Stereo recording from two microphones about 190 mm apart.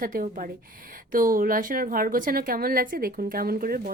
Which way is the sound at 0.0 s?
45° right (ahead or behind).